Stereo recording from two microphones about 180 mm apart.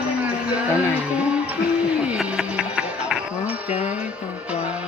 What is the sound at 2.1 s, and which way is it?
Music, 5° right (ahead or behind).